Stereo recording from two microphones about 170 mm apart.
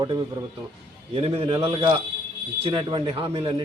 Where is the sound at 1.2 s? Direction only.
35° right (ahead or behind).